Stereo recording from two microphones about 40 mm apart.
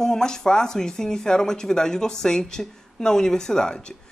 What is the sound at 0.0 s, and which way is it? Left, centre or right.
A man's voice, centre.